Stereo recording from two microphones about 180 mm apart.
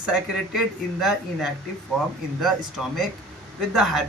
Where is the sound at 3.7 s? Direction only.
5° right (ahead or behind).